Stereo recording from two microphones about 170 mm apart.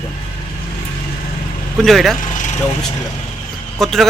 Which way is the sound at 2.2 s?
50° left (ahead or behind).